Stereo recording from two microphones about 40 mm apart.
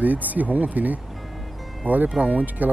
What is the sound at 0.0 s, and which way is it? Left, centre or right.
Speech, right.